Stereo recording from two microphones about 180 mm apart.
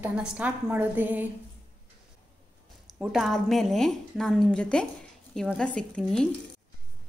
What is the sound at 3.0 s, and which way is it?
A woman's voice, centre (ahead or behind).